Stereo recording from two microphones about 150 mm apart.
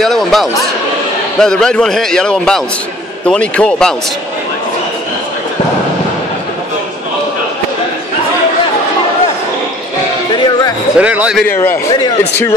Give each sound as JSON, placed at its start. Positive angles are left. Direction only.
{"t": 0.0, "sound": "a man's voice", "side_deg": 0}
{"t": 10.3, "sound": "music", "side_deg": 30}
{"t": 11.0, "sound": "speech", "side_deg": -10}
{"t": 11.4, "sound": "a man's voice", "side_deg": 15}